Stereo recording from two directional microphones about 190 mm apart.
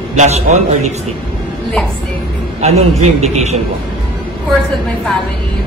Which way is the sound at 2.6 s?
35° right (ahead or behind).